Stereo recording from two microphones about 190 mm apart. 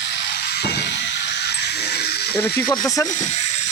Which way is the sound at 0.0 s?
65° left (ahead or behind).